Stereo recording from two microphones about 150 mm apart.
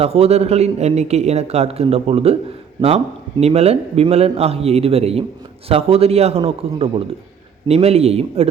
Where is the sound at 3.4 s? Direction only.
45° right (ahead or behind).